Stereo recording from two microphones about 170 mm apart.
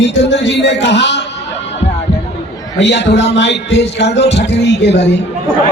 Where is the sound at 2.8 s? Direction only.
90° left.